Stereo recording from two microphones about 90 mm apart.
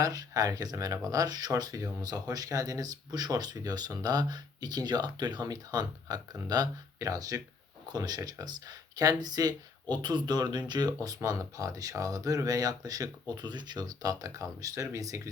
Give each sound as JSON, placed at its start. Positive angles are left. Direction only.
{"t": 0.0, "sound": "speech", "side_deg": -40}